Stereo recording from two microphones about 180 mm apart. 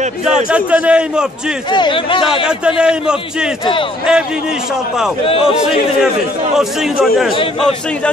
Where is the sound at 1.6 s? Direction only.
25° left (ahead or behind).